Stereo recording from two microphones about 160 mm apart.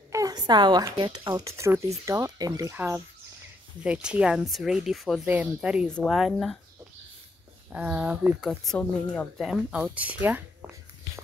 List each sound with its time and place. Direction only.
0.1 s a woman's voice: 25° right (ahead or behind); by 6.6 s centre (ahead or behind)
7.7 s speech: 10° right (ahead or behind); by 9.3 s 10° left (ahead or behind)
9.4 s speech: 5° right (ahead or behind)